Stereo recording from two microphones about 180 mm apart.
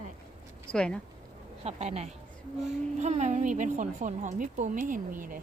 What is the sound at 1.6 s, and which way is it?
A woman's voice, 35° right (ahead or behind).